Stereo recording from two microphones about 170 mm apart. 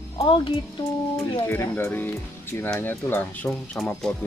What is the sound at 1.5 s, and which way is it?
Speech, 15° left (ahead or behind).